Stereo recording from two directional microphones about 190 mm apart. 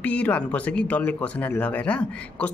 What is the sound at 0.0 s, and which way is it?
Speech, 5° left (ahead or behind).